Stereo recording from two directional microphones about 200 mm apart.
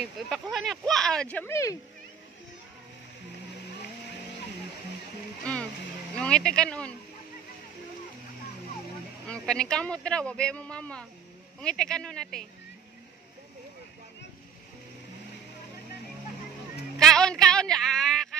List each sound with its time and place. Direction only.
0.3 s speech: centre (ahead or behind)
5.4 s speech: 5° left (ahead or behind)
9.3 s speech: 5° left (ahead or behind)
17.0 s a man's voice: 5° left (ahead or behind)